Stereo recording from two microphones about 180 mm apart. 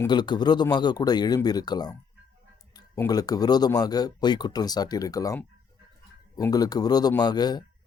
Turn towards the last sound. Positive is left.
turn(degrees=25)  # may be behind; listen again after turning